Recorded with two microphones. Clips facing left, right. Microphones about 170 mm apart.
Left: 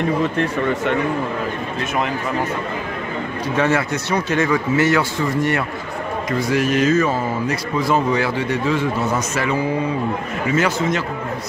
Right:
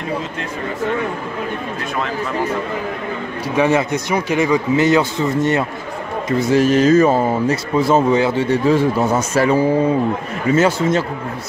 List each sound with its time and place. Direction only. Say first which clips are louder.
3.4 s a man's voice: right 3 dB; 15° right (ahead or behind); by 11.1 s 30° right (ahead or behind)